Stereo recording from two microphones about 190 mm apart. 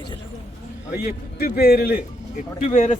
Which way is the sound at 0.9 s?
55° left (ahead or behind).